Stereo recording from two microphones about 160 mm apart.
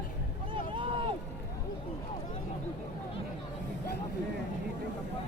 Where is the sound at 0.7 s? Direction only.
30° right (ahead or behind).